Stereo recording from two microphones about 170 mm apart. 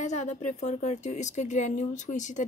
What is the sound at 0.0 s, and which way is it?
A woman's voice, 45° left (ahead or behind).